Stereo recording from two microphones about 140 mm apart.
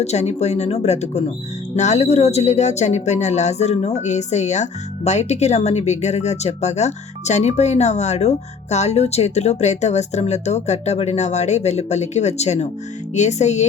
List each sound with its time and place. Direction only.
0.0 s speech: 50° left (ahead or behind)
13.1 s music: 55° left (ahead or behind)